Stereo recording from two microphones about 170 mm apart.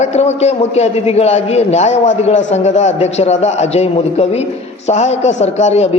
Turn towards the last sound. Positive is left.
turn(degrees=40)  # may be behind; listen again after turning